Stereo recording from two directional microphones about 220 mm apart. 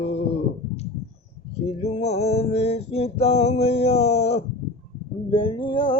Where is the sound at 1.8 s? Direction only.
30° left (ahead or behind).